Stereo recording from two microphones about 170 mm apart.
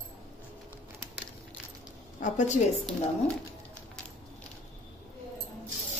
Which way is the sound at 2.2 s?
45° left (ahead or behind).